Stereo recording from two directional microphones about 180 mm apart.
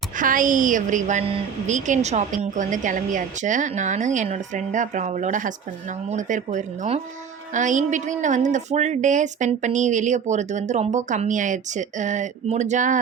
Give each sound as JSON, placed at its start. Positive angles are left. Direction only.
{"t": 0.2, "sound": "a woman's voice", "side_deg": -50}